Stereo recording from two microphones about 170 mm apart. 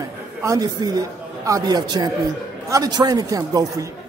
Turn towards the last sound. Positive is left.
turn(degrees=-20)  # may be behind; listen again after turning